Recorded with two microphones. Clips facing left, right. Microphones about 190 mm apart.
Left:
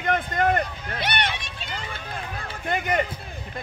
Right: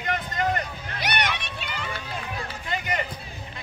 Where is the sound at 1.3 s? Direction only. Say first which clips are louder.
Right 1 dB; 60° right (ahead or behind).